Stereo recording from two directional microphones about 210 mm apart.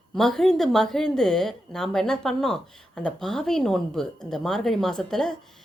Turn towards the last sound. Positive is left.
turn(degrees=0)  # may be behind; listen again after turning